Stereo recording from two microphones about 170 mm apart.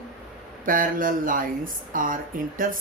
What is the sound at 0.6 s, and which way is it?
Speech, 55° right (ahead or behind).